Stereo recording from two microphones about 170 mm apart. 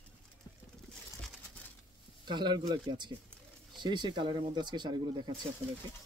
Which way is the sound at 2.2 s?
25° right (ahead or behind).